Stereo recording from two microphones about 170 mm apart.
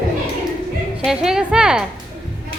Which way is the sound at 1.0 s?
5° right (ahead or behind).